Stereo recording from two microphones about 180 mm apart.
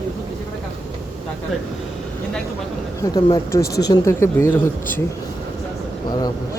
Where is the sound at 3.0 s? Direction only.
20° left (ahead or behind).